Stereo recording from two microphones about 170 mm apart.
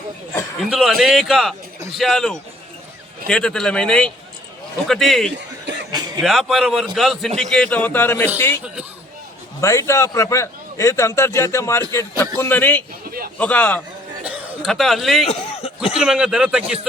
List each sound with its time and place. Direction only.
0.7 s speech: centre (ahead or behind)
5.9 s a sound: 25° right (ahead or behind)
6.2 s a man's voice: centre (ahead or behind)
8.6 s speech: 5° right (ahead or behind)
9.6 s a man's voice: 15° left (ahead or behind)
13.1 s a sound: 60° right (ahead or behind)
13.4 s a man's voice: 10° left (ahead or behind)
15.3 s speech: 35° left (ahead or behind)
15.8 s speech: 5° right (ahead or behind)